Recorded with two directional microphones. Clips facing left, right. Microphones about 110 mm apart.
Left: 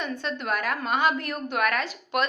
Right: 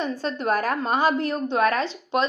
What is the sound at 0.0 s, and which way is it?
A woman's voice, 35° right (ahead or behind).